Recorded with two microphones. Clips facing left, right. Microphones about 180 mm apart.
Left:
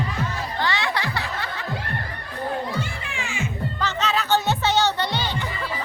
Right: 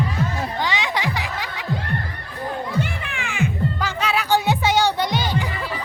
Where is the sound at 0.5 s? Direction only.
15° right (ahead or behind).